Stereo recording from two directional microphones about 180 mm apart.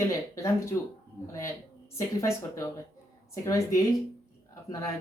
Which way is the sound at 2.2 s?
15° left (ahead or behind).